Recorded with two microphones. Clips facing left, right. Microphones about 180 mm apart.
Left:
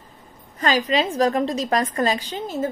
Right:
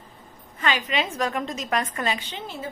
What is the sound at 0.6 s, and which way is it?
A woman's voice, 35° left (ahead or behind).